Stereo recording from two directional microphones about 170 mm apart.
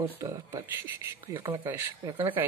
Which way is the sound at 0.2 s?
15° right (ahead or behind).